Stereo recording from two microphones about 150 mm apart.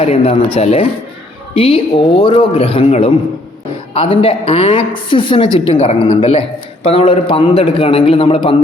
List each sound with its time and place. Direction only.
0.0 s a woman's voice: 45° left (ahead or behind)